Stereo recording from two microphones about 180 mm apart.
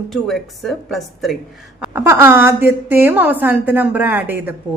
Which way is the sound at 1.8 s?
15° right (ahead or behind).